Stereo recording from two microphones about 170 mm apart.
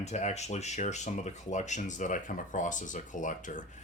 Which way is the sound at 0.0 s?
40° left (ahead or behind).